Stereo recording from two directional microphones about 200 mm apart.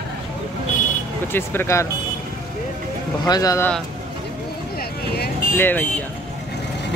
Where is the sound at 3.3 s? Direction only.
15° left (ahead or behind).